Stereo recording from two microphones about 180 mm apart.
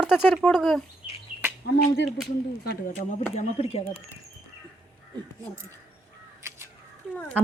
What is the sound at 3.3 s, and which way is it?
Speech, 35° left (ahead or behind).